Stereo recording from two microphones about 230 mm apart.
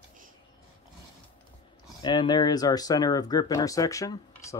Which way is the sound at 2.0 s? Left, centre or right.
Centre.